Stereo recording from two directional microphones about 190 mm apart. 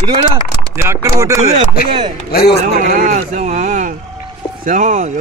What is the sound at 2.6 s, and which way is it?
Speech, 45° right (ahead or behind).